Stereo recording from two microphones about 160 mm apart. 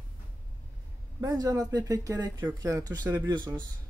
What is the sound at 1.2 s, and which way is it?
Speech, 20° right (ahead or behind).